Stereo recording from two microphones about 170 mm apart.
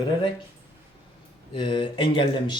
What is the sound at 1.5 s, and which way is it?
Speech, 30° left (ahead or behind).